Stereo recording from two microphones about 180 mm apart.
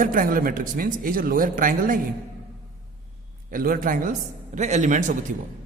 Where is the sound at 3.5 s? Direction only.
50° right (ahead or behind).